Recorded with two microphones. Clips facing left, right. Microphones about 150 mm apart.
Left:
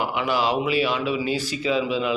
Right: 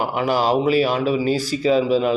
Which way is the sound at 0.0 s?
40° right (ahead or behind).